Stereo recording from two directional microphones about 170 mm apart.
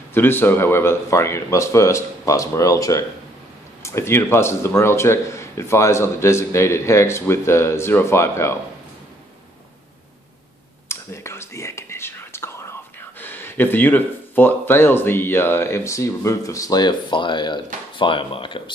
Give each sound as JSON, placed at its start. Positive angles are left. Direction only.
{"t": 0.1, "sound": "speech", "side_deg": 10}
{"t": 10.9, "sound": "whispering", "side_deg": 15}
{"t": 13.2, "sound": "speech", "side_deg": 10}